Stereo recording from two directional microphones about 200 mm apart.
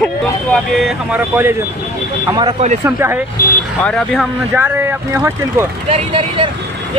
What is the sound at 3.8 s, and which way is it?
Speech, 5° left (ahead or behind).